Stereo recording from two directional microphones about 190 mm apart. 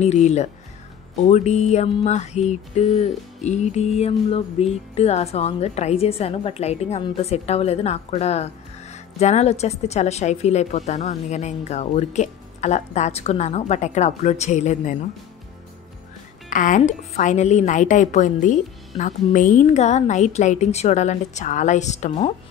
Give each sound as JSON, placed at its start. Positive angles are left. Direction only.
{"t": 0.0, "sound": "a woman's voice", "side_deg": 35}
{"t": 16.4, "sound": "a woman's voice", "side_deg": 45}